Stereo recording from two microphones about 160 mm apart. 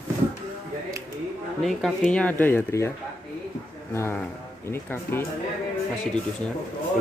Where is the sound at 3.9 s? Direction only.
15° left (ahead or behind).